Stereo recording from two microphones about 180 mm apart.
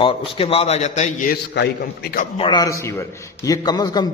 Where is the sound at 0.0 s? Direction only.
30° left (ahead or behind).